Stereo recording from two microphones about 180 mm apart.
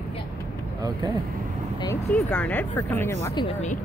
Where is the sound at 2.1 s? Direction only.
5° left (ahead or behind).